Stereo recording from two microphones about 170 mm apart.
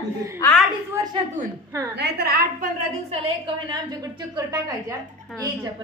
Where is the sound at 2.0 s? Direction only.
65° right (ahead or behind).